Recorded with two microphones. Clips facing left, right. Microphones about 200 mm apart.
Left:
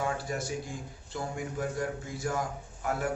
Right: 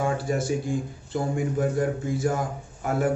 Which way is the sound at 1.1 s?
25° right (ahead or behind).